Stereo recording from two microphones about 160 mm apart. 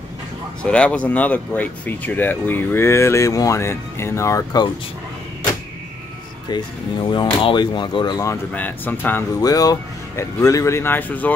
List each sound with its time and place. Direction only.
0.6 s speech: 5° left (ahead or behind)
6.5 s speech: 25° left (ahead or behind)
8.5 s speech: 10° left (ahead or behind)
9.4 s speech: 25° left (ahead or behind)